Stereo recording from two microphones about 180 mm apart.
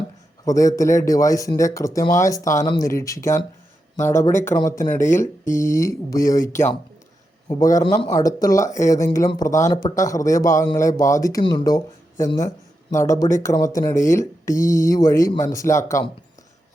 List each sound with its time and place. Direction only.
0.4 s speech: 20° left (ahead or behind)